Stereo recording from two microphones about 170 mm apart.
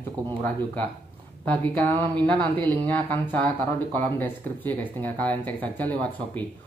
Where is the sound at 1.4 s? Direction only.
10° left (ahead or behind).